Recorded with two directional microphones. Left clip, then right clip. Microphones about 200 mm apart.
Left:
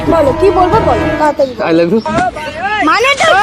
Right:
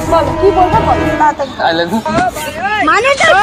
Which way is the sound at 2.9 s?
70° left (ahead or behind).